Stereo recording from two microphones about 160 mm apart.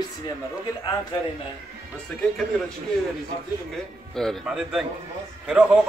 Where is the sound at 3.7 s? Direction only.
Centre (ahead or behind).